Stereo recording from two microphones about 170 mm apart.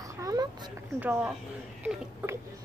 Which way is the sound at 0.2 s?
20° right (ahead or behind).